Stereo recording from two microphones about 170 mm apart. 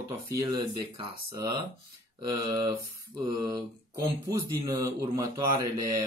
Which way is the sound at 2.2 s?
20° right (ahead or behind).